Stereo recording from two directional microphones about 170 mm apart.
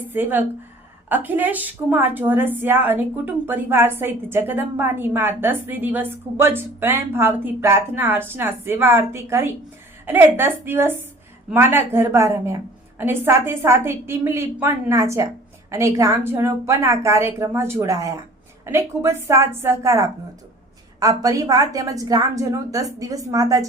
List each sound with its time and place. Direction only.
0.1 s a woman's voice: 10° right (ahead or behind)